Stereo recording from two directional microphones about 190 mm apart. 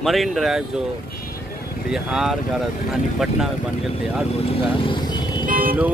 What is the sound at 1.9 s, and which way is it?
Speech, centre (ahead or behind).